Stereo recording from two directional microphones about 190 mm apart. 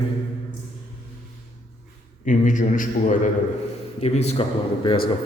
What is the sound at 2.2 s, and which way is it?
A man's voice, 40° left (ahead or behind).